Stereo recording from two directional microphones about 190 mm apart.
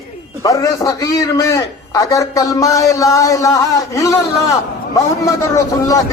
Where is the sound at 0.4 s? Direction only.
15° left (ahead or behind).